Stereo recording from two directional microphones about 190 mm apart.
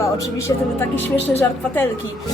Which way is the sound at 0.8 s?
10° left (ahead or behind).